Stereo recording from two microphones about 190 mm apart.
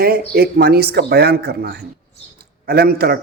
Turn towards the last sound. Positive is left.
turn(degrees=-55)  # may be behind; listen again after turning